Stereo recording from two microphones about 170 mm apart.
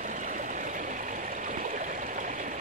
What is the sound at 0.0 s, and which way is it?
Stream, 50° right (ahead or behind).